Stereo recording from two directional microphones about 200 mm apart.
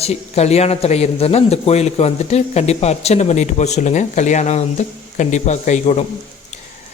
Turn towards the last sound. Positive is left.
turn(degrees=35)  # may be behind; listen again after turning